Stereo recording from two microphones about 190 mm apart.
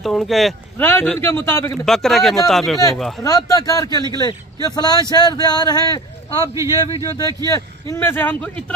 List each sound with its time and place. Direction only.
0.0 s speech: centre (ahead or behind)
1.9 s speech: centre (ahead or behind)
3.3 s speech: 15° left (ahead or behind)
6.5 s speech: 15° right (ahead or behind)
7.0 s speech: 20° left (ahead or behind)